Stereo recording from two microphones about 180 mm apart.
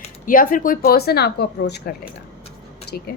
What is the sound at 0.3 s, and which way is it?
A woman's voice, 50° left (ahead or behind).